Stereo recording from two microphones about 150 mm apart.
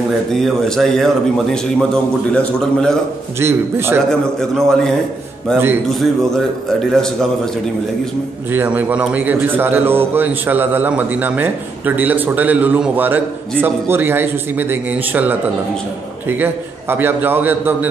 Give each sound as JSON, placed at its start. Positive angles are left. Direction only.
{"t": 0.3, "sound": "a man's voice", "side_deg": 0}
{"t": 3.3, "sound": "a man's voice", "side_deg": -15}
{"t": 4.1, "sound": "a man's voice", "side_deg": 5}
{"t": 5.9, "sound": "a man's voice", "side_deg": 0}
{"t": 8.5, "sound": "a man's voice", "side_deg": -15}